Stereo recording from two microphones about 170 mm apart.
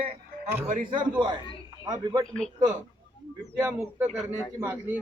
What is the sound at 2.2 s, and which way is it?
Speech, 5° left (ahead or behind).